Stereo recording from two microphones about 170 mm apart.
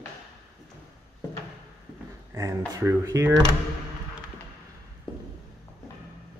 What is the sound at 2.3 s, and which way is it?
Speech, 15° right (ahead or behind).